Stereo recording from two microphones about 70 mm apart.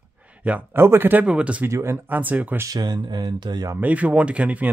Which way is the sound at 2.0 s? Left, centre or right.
Right.